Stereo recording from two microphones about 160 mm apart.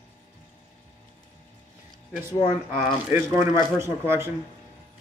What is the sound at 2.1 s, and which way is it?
Speech, 15° right (ahead or behind).